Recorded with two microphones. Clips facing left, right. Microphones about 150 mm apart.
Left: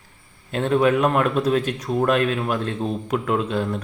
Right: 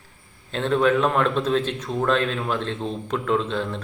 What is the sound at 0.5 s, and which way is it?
Speech, 10° left (ahead or behind).